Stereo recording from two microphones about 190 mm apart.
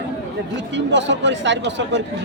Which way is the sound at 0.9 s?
70° right (ahead or behind).